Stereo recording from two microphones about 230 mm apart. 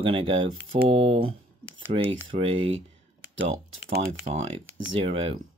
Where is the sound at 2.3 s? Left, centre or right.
Right.